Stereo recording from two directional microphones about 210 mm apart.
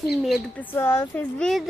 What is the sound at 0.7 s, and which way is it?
Speech, 10° left (ahead or behind).